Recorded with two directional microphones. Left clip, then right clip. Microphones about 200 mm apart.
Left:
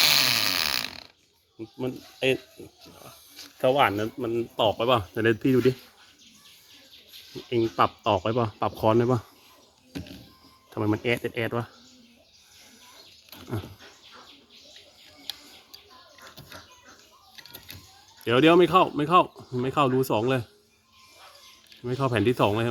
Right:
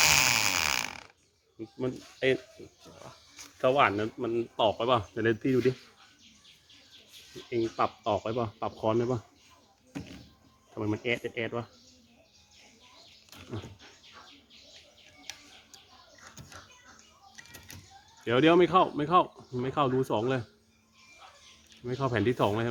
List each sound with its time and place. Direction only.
0.0 s a sound: 10° right (ahead or behind)
1.5 s speech: 20° left (ahead or behind)
3.6 s speech: 25° left (ahead or behind)
7.5 s speech: 45° left (ahead or behind)
10.8 s speech: 35° left (ahead or behind)
18.3 s speech: 25° left (ahead or behind)
21.8 s speech: 25° left (ahead or behind)